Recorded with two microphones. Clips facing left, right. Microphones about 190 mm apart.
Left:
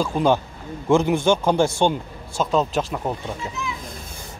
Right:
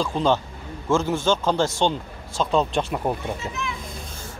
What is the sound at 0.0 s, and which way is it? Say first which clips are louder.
A man's voice: left 2 dB; 10° left (ahead or behind).